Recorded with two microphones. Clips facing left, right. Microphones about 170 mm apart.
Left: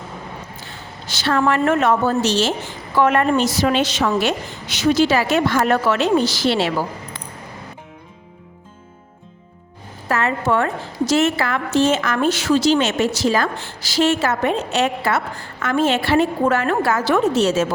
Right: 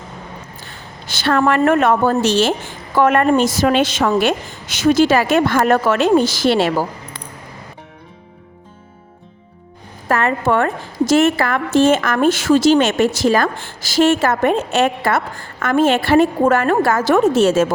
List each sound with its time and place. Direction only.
1.0 s a woman's voice: 55° right (ahead or behind)
10.1 s a woman's voice: 55° right (ahead or behind)